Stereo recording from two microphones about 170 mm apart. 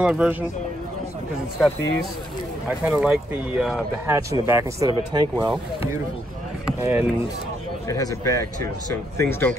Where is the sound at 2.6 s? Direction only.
10° right (ahead or behind).